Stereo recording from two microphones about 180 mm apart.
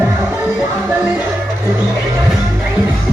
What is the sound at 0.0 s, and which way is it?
Music, 5° right (ahead or behind).